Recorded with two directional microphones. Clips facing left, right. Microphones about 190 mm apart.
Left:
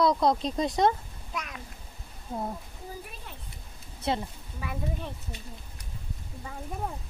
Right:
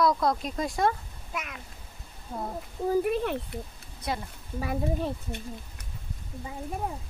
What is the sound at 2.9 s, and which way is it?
Speech, 70° right (ahead or behind).